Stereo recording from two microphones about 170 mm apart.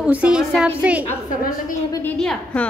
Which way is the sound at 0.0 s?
5° right (ahead or behind).